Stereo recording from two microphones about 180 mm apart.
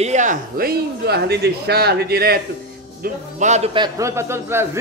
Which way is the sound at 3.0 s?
40° right (ahead or behind).